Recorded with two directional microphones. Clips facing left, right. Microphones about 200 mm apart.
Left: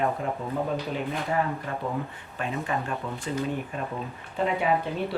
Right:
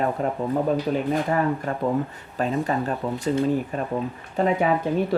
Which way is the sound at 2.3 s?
40° right (ahead or behind).